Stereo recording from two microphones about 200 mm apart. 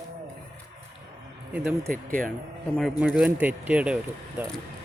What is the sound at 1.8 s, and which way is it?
Speech, 45° right (ahead or behind).